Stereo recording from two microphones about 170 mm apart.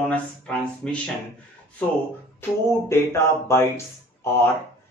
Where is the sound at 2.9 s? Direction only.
15° left (ahead or behind).